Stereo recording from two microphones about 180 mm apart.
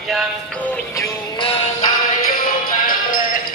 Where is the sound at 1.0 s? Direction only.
30° left (ahead or behind).